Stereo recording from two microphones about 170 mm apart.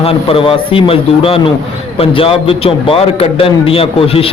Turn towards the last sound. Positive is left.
turn(degrees=35)  # may be behind; listen again after turning